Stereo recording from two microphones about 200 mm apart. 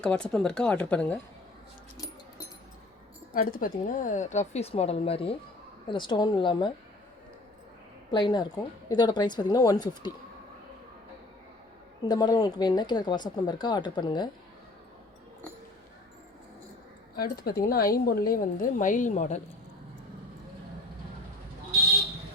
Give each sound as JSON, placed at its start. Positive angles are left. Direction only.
{"t": 0.0, "sound": "speech", "side_deg": 5}
{"t": 3.3, "sound": "a woman's voice", "side_deg": 45}
{"t": 8.1, "sound": "speech", "side_deg": 20}
{"t": 12.0, "sound": "speech", "side_deg": 20}
{"t": 17.2, "sound": "a woman's voice", "side_deg": 50}